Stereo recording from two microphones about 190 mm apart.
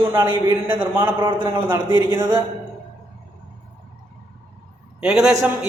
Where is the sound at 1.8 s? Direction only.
20° left (ahead or behind).